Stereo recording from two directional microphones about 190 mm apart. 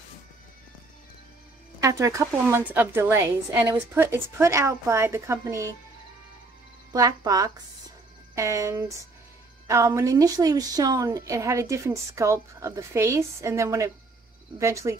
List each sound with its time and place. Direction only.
1.8 s a woman's voice: 15° right (ahead or behind)
6.9 s a woman's voice: 20° right (ahead or behind)